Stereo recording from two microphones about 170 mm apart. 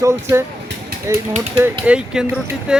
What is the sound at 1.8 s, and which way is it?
Speech, 5° right (ahead or behind).